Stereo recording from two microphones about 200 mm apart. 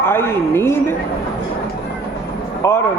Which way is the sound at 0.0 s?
10° left (ahead or behind).